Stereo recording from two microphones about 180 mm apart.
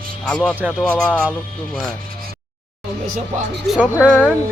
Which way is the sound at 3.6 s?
5° right (ahead or behind).